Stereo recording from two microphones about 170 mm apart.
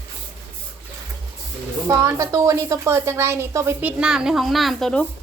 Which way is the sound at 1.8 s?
15° right (ahead or behind).